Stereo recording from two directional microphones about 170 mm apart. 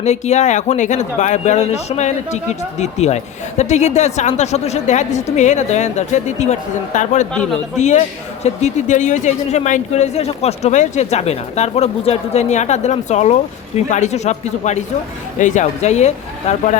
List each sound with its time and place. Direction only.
0.0 s a woman's voice: 40° left (ahead or behind)